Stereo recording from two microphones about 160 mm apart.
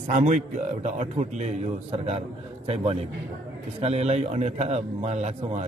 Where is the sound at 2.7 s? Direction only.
40° right (ahead or behind).